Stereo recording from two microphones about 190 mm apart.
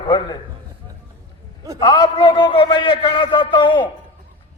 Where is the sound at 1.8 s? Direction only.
20° left (ahead or behind).